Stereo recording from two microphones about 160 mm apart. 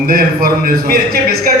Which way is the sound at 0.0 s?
65° right (ahead or behind).